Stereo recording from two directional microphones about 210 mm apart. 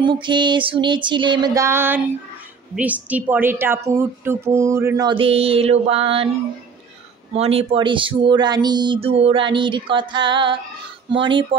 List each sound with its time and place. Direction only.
0.0 s a woman's voice: 20° right (ahead or behind)
7.3 s speech: 30° right (ahead or behind)